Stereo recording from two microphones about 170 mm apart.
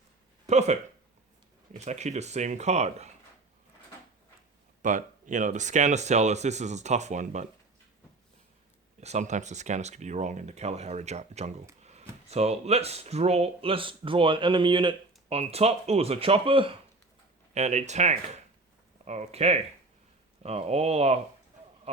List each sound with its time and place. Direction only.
0.4 s speech: 40° right (ahead or behind)
4.8 s speech: 45° right (ahead or behind)
9.0 s speech: 40° right (ahead or behind)
17.5 s speech: 40° right (ahead or behind)